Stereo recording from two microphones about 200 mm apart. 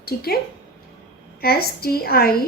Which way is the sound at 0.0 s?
50° left (ahead or behind).